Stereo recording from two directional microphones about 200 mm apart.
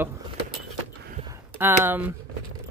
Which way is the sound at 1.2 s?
15° right (ahead or behind).